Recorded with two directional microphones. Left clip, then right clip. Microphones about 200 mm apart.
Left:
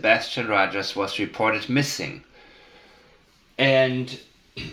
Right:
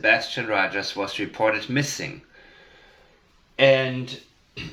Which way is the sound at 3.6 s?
35° left (ahead or behind).